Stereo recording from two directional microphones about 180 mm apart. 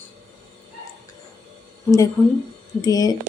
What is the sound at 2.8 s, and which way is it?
Speech, 20° left (ahead or behind).